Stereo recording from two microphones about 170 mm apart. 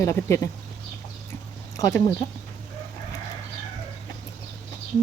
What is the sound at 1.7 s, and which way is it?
Speech, 20° left (ahead or behind).